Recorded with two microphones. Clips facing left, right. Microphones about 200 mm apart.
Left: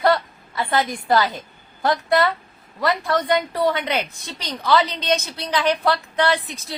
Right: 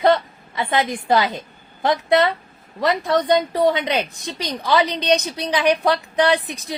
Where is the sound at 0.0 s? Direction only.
20° right (ahead or behind).